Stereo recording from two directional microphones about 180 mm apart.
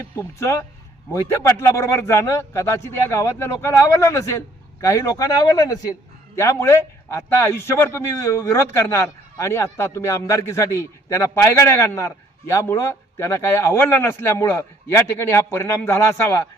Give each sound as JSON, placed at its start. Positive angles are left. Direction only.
{"t": 0.0, "sound": "a man's voice", "side_deg": 15}